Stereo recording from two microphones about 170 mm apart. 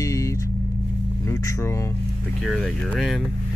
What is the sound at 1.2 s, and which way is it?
Speech, 20° left (ahead or behind).